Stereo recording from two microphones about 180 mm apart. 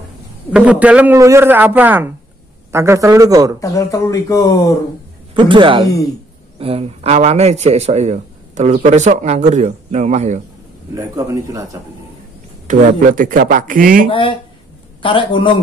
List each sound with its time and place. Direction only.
0.5 s a man's voice: 10° right (ahead or behind)
3.5 s speech: 20° left (ahead or behind)
5.3 s a man's voice: 25° right (ahead or behind)
11.0 s a man's voice: 15° right (ahead or behind)
12.6 s speech: 45° right (ahead or behind)
14.0 s a man's voice: 30° left (ahead or behind)